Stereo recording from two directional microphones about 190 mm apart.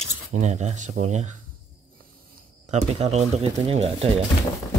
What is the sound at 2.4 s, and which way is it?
Speech, 35° right (ahead or behind).